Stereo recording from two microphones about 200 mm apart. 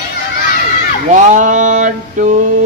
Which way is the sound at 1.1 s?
40° right (ahead or behind).